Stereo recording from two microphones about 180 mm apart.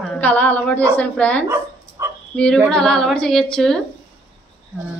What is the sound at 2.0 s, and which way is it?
Bow-wow, 15° right (ahead or behind).